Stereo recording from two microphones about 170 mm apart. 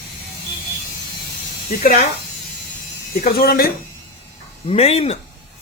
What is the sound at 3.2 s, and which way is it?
Speech, 65° left (ahead or behind).